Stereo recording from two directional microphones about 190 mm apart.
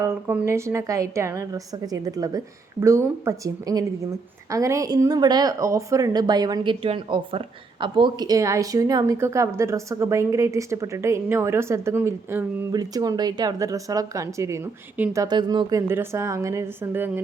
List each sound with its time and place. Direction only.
0.0 s a woman's voice: 10° right (ahead or behind)